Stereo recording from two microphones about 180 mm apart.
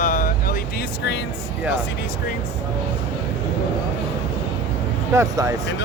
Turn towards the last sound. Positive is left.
turn(degrees=-15)  # may be behind; listen again after turning